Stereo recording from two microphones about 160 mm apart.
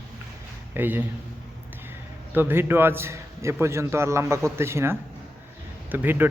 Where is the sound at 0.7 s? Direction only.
10° right (ahead or behind).